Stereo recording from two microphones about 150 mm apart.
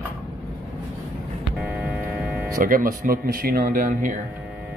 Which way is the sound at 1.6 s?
5° right (ahead or behind).